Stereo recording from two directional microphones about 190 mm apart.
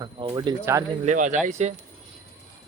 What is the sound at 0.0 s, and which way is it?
Speech, 25° right (ahead or behind).